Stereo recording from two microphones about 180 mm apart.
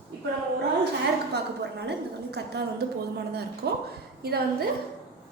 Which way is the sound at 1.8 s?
65° right (ahead or behind).